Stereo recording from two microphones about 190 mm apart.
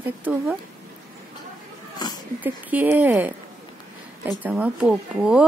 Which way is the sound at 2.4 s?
10° right (ahead or behind).